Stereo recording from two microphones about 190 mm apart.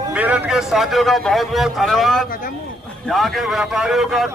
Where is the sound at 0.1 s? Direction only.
5° right (ahead or behind).